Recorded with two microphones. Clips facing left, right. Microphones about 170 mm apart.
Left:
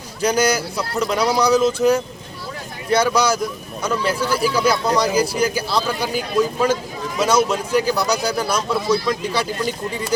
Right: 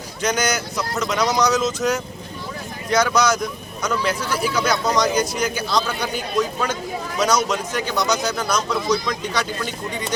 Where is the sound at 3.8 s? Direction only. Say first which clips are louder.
Left 2 dB; 30° left (ahead or behind).